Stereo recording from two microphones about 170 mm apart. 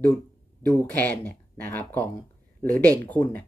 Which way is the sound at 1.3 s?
10° left (ahead or behind).